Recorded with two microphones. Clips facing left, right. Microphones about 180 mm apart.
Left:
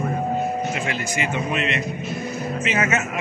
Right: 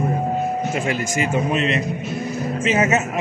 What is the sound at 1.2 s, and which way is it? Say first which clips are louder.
Speech: right 4 dB; 35° right (ahead or behind).